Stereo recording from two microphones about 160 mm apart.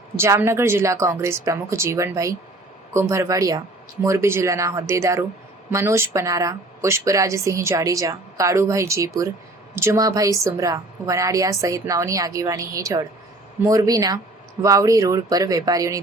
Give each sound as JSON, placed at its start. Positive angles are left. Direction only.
{"t": 0.2, "sound": "a woman's voice", "side_deg": -15}